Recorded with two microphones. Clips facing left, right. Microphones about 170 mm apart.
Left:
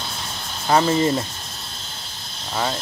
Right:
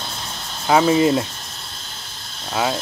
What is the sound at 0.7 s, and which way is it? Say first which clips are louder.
Speech: right 3 dB; 5° right (ahead or behind).